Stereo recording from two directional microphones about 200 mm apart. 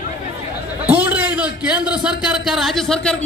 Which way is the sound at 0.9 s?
10° right (ahead or behind).